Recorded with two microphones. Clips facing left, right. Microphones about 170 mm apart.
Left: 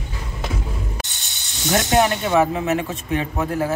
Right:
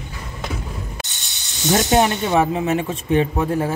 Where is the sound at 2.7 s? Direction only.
30° right (ahead or behind).